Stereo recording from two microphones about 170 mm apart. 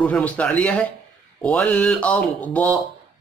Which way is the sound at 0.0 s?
10° left (ahead or behind).